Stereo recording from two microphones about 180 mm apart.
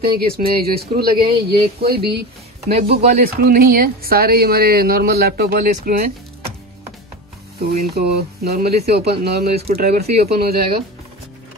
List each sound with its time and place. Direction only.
0.0 s speech: 60° right (ahead or behind)
2.7 s speech: 35° right (ahead or behind)
3.2 s speech: 55° right (ahead or behind)
7.5 s speech: 55° right (ahead or behind)
9.7 s speech: 45° right (ahead or behind)
10.2 s speech: 60° right (ahead or behind)